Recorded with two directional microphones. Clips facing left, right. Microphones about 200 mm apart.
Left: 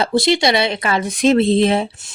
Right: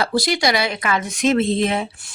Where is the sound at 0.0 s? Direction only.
25° left (ahead or behind).